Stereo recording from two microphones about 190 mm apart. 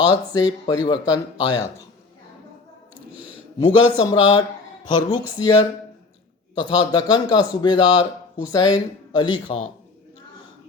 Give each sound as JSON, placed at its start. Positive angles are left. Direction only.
{"t": 0.1, "sound": "a man's voice", "side_deg": 20}
{"t": 3.7, "sound": "a man's voice", "side_deg": 25}